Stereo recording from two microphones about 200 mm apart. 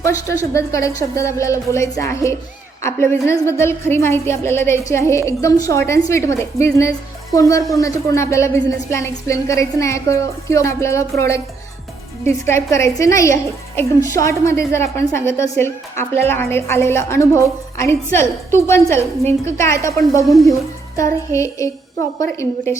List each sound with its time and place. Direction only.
0.5 s a woman's voice: 15° left (ahead or behind)
20.2 s speech: centre (ahead or behind)
20.9 s a woman's voice: 15° left (ahead or behind)